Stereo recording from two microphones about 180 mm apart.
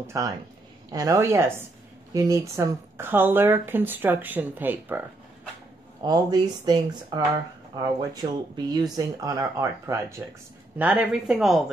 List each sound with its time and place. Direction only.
0.0 s speech: 15° right (ahead or behind)
6.0 s speech: 20° right (ahead or behind); by 11.6 s centre (ahead or behind)